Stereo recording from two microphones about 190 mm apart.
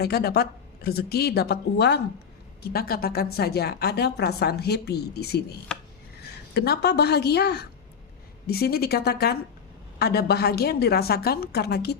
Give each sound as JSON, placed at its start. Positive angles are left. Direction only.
{"t": 0.0, "sound": "a woman's voice", "side_deg": 55}